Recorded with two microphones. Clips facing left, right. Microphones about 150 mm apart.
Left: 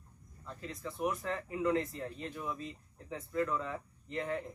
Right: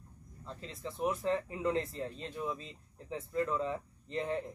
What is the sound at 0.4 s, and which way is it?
A man's voice, 30° right (ahead or behind).